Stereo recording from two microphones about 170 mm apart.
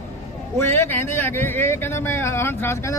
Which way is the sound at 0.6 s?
15° left (ahead or behind).